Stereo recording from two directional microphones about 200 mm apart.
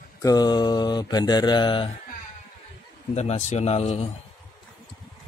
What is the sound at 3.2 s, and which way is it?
Speech, 35° left (ahead or behind).